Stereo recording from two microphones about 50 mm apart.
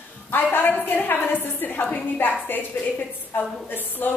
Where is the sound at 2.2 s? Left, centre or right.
Left.